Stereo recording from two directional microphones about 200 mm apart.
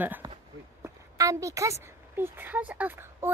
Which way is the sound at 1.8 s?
10° right (ahead or behind).